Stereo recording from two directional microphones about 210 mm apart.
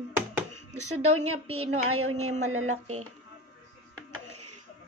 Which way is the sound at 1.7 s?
90° right.